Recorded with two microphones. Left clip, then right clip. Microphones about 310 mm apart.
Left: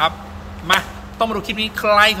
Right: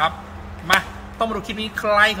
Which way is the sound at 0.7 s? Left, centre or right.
Centre.